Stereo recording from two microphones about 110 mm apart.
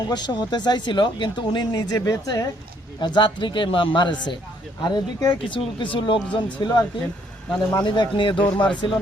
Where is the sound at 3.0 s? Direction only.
45° left (ahead or behind).